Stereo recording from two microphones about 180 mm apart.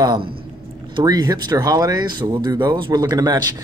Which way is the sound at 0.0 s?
25° right (ahead or behind).